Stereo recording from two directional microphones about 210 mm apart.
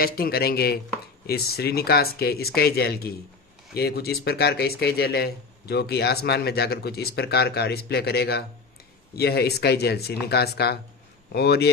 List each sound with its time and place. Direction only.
0.0 s speech: 45° left (ahead or behind)